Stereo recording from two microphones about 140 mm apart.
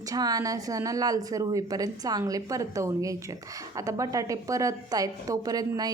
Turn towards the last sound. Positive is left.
turn(degrees=-25)  # may be behind; listen again after turning